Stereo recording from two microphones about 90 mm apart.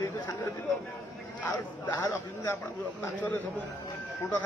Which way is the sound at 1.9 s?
35° left (ahead or behind).